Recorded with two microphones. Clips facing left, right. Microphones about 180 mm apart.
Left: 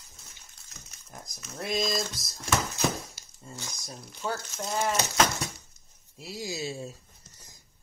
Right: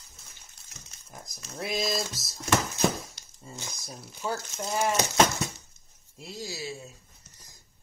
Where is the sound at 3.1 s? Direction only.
Centre (ahead or behind).